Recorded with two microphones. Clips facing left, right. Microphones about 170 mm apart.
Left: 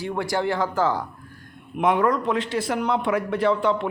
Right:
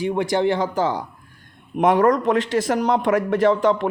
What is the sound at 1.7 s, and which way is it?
A man's voice, 45° right (ahead or behind).